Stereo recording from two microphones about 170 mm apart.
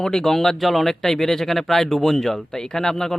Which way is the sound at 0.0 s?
5° left (ahead or behind).